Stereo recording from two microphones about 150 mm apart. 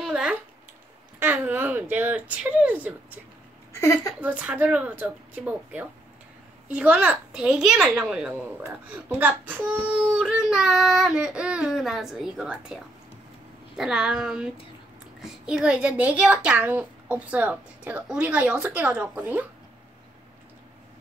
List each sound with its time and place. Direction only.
0.0 s a sound: 5° right (ahead or behind)
1.2 s a child's voice: 10° right (ahead or behind)
3.7 s a woman's voice: 20° left (ahead or behind)
4.2 s a child's voice: 10° right (ahead or behind)